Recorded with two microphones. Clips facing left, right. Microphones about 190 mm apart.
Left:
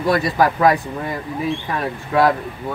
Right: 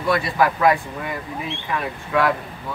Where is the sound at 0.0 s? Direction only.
40° left (ahead or behind).